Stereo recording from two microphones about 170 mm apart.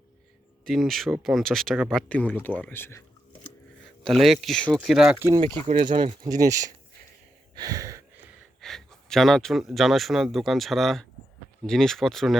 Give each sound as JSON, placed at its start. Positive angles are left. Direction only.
{"t": 0.7, "sound": "speech", "side_deg": 0}
{"t": 3.8, "sound": "speech", "side_deg": 0}
{"t": 5.6, "sound": "speech", "side_deg": -30}
{"t": 7.5, "sound": "a sound", "side_deg": -20}
{"t": 8.6, "sound": "speech", "side_deg": 0}